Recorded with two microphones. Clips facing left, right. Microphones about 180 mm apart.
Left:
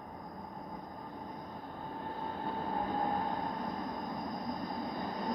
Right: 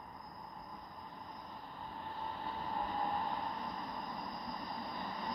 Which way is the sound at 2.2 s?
50° left (ahead or behind).